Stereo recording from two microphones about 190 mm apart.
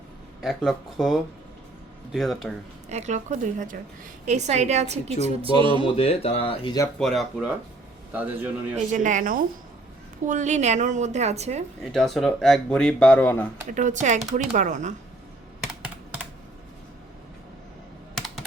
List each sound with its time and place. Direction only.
0.4 s speech: centre (ahead or behind)
2.9 s a woman's voice: 35° right (ahead or behind)
5.8 s speech: 30° left (ahead or behind)
7.0 s speech: centre (ahead or behind)
8.7 s a woman's voice: 40° right (ahead or behind)
11.8 s speech: centre (ahead or behind)
13.7 s a woman's voice: 40° right (ahead or behind)
18.1 s computer keyboard: centre (ahead or behind)